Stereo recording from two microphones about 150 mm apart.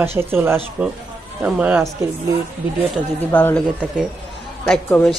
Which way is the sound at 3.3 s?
10° left (ahead or behind).